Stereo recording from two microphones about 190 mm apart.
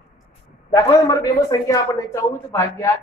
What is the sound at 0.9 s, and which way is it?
Speech, 20° left (ahead or behind).